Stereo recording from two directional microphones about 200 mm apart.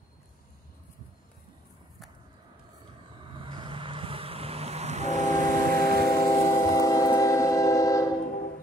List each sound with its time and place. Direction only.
3.3 s vehicle: 25° right (ahead or behind)
5.3 s vehicle: 15° left (ahead or behind)